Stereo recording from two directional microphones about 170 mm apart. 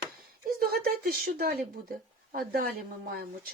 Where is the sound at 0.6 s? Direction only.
65° right (ahead or behind).